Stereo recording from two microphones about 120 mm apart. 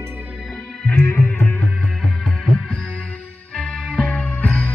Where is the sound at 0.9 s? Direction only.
15° left (ahead or behind).